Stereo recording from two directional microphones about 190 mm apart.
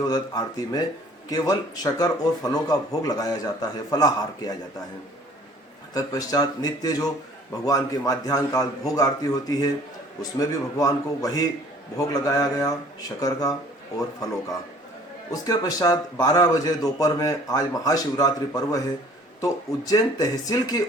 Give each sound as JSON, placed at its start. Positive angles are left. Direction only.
{"t": 0.0, "sound": "a man's voice", "side_deg": 20}
{"t": 5.9, "sound": "a man's voice", "side_deg": 20}
{"t": 15.3, "sound": "a man's voice", "side_deg": 20}